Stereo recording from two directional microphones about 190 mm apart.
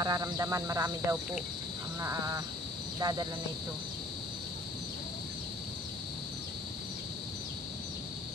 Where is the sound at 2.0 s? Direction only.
15° right (ahead or behind).